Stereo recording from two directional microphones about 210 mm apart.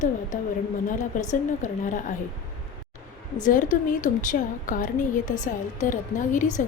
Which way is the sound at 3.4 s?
40° left (ahead or behind).